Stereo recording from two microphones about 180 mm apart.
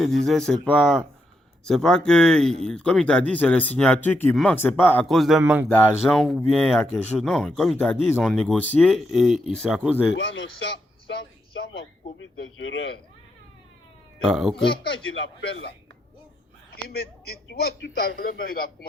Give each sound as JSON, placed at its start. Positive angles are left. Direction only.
{"t": 0.0, "sound": "speech", "side_deg": 0}
{"t": 5.0, "sound": "speech", "side_deg": 0}
{"t": 5.6, "sound": "speech", "side_deg": 10}
{"t": 10.2, "sound": "speech", "side_deg": 85}
{"t": 12.2, "sound": "a man's voice", "side_deg": 90}
{"t": 14.3, "sound": "speech", "side_deg": 0}
{"t": 14.9, "sound": "a man's voice", "side_deg": 90}
{"t": 16.7, "sound": "a man's voice", "side_deg": 60}